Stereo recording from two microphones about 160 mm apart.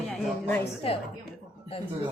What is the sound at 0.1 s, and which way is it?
Speech, 10° left (ahead or behind).